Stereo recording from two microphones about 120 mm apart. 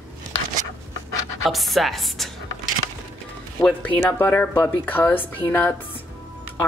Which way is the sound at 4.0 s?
15° left (ahead or behind).